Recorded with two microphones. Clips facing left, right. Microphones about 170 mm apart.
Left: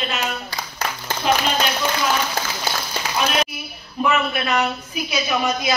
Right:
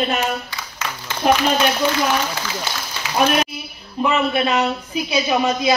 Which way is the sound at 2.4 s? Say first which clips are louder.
Left 2 dB; 45° left (ahead or behind).